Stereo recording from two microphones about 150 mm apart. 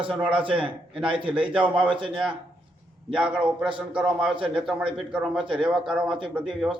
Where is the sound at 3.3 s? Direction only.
5° right (ahead or behind).